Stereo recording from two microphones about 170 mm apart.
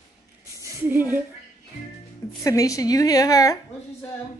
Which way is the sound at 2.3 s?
20° left (ahead or behind).